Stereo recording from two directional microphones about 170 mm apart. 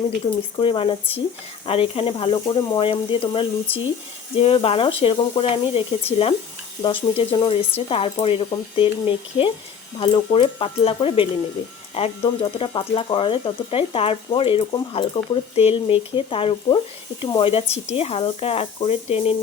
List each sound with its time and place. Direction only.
0.5 s speech: 30° left (ahead or behind)